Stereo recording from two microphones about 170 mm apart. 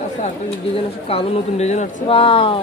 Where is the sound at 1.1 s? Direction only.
35° left (ahead or behind).